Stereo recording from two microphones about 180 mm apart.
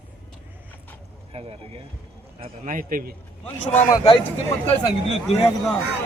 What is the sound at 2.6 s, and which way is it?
Speech, 50° right (ahead or behind).